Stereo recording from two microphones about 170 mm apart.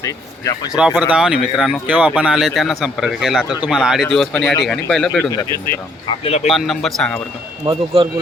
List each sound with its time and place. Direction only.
0.0 s speech: 20° left (ahead or behind)
0.7 s speech: 5° right (ahead or behind)
5.2 s speech: 15° left (ahead or behind)
6.2 s a man's voice: 40° left (ahead or behind)
6.5 s speech: centre (ahead or behind)
7.6 s speech: 30° right (ahead or behind)